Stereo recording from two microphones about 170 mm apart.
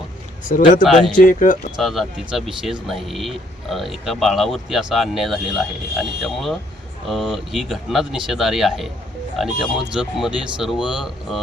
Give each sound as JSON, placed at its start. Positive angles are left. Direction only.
{"t": 0.4, "sound": "speech", "side_deg": 50}
{"t": 0.9, "sound": "speech", "side_deg": 0}
{"t": 1.2, "sound": "speech", "side_deg": 50}
{"t": 1.7, "sound": "speech", "side_deg": 0}